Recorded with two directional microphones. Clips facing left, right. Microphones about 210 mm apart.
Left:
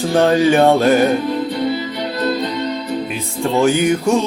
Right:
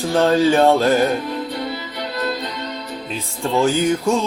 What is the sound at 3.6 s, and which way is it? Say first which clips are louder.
Speech: left 3 dB; 15° left (ahead or behind).